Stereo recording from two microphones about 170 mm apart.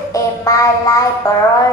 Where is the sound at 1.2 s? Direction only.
20° left (ahead or behind).